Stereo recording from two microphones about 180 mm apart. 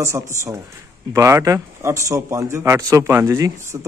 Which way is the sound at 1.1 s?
15° right (ahead or behind).